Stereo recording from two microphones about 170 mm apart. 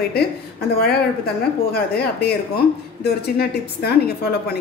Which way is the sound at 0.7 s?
70° left (ahead or behind).